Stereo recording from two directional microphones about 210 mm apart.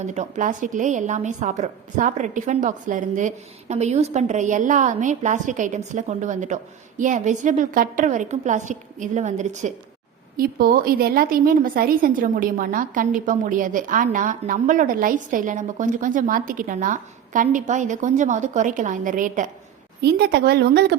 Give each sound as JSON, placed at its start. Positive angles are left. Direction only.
{"t": 0.0, "sound": "a woman's voice", "side_deg": -35}
{"t": 20.0, "sound": "speech", "side_deg": -50}